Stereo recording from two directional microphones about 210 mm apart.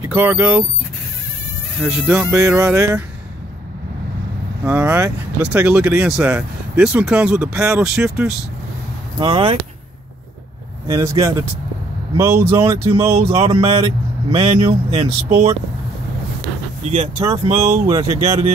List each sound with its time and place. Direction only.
0.0 s speech: 10° right (ahead or behind)
1.8 s speech: 5° right (ahead or behind)
4.6 s speech: 10° right (ahead or behind)
9.2 s speech: 25° right (ahead or behind)
10.9 s speech: 15° right (ahead or behind)
12.9 s speech: 30° right (ahead or behind)
17.2 s speech: 20° right (ahead or behind)